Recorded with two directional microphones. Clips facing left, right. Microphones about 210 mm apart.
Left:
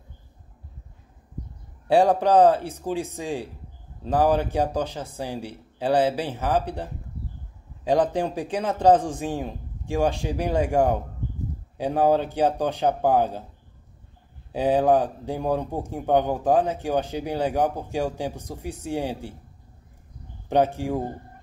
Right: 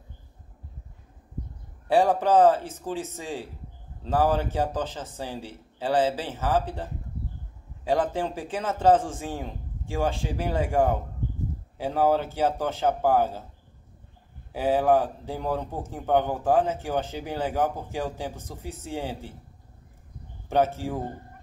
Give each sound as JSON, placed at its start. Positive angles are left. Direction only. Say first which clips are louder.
{"t": 1.9, "sound": "speech", "louder": "left 3 dB", "side_deg": 15}
{"t": 14.5, "sound": "speech", "louder": "left 2 dB", "side_deg": 15}
{"t": 20.4, "sound": "speech", "louder": "left 2 dB", "side_deg": 15}